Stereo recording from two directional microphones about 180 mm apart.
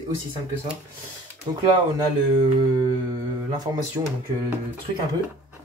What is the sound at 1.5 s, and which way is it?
Speech, 25° right (ahead or behind).